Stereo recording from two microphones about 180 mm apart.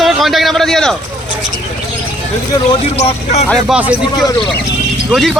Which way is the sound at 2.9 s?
35° left (ahead or behind).